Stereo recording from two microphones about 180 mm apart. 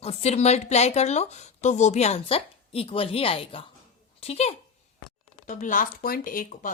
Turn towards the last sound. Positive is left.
turn(degrees=50)  # may be behind; listen again after turning